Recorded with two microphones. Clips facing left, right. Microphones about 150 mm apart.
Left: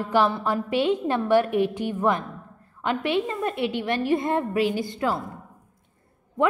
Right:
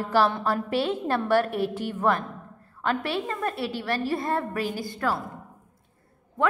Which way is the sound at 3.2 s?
20° left (ahead or behind).